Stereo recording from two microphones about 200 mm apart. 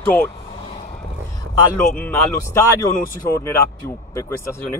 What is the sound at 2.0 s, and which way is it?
Speech, 10° left (ahead or behind).